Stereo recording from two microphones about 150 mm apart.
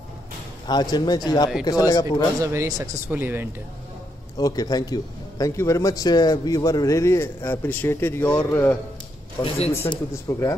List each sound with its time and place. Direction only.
0.7 s a man's voice: 30° left (ahead or behind)
2.4 s speech: 20° right (ahead or behind)
4.4 s a man's voice: 25° left (ahead or behind)